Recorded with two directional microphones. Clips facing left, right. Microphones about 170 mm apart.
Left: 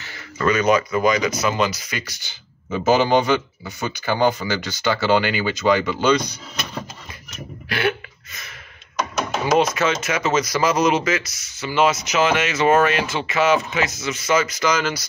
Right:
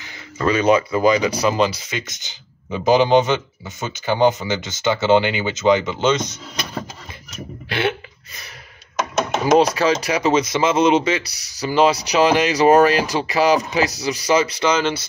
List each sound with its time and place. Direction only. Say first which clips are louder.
0.0 s a sound: even; 15° right (ahead or behind)
0.5 s speech: right 2 dB; 30° right (ahead or behind)
9.1 s speech: right 4 dB; 25° right (ahead or behind)